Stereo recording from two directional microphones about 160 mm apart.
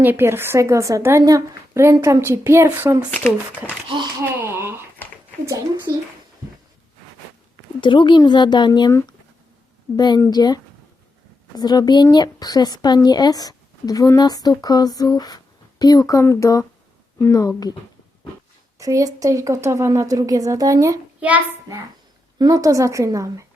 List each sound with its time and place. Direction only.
0.0 s a woman's voice: 15° right (ahead or behind)
3.1 s speech: 10° left (ahead or behind)
4.4 s a sound: 15° right (ahead or behind)
5.5 s speech: 20° right (ahead or behind)
7.8 s speech: 30° left (ahead or behind)
10.2 s speech: 25° left (ahead or behind)
18.8 s speech: 20° right (ahead or behind)
21.2 s child singing: 10° right (ahead or behind)
22.4 s speech: 20° right (ahead or behind)